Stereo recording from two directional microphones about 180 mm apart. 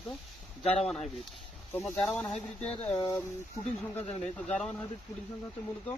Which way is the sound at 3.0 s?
20° left (ahead or behind).